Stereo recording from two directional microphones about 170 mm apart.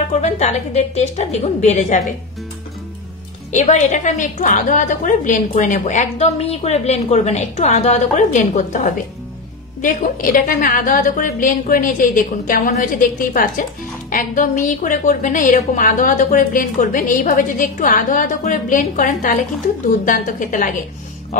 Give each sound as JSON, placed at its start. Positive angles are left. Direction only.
{"t": 0.1, "sound": "a woman's voice", "side_deg": 45}
{"t": 3.5, "sound": "a woman's voice", "side_deg": 45}